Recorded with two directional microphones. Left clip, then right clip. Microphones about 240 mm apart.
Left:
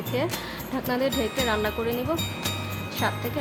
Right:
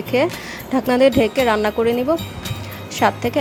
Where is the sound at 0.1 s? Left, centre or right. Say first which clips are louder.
Right 10 dB; right.